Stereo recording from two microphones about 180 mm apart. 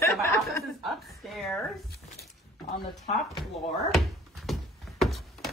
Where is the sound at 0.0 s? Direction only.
15° left (ahead or behind).